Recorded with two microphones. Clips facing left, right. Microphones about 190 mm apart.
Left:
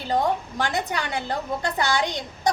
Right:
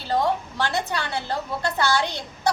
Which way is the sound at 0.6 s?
15° left (ahead or behind).